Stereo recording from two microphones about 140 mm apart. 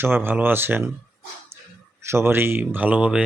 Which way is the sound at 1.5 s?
20° right (ahead or behind).